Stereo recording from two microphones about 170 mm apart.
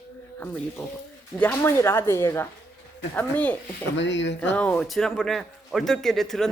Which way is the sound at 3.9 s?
90° left.